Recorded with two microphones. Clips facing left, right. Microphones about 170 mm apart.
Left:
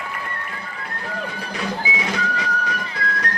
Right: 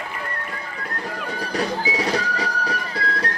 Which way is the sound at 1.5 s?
40° right (ahead or behind).